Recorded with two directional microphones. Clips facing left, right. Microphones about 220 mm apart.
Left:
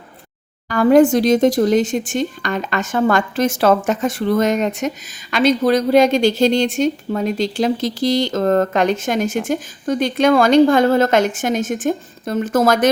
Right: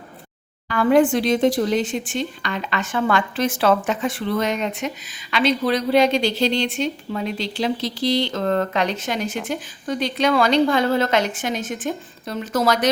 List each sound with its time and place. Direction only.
0.7 s a woman's voice: 40° left (ahead or behind)